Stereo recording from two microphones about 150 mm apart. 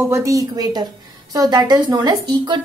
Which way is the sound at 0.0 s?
20° right (ahead or behind).